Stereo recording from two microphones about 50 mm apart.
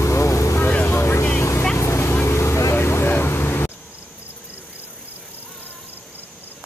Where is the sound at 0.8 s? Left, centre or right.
Left.